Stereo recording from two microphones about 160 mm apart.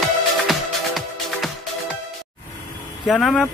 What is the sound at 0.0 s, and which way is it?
Music, centre (ahead or behind).